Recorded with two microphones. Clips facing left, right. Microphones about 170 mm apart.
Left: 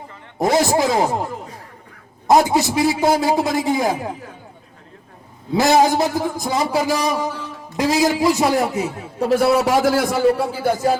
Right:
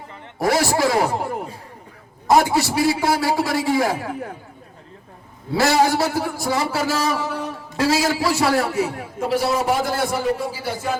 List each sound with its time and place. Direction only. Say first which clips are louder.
0.3 s a man's voice: left 3 dB; 20° left (ahead or behind)
2.2 s a man's voice: left 2 dB; 20° left (ahead or behind)
5.5 s a man's voice: left 3 dB; 20° left (ahead or behind)
9.3 s a man's voice: left 5 dB; 60° left (ahead or behind); by 10.4 s 90° left
10.5 s a man's voice: left 7 dB; 50° left (ahead or behind)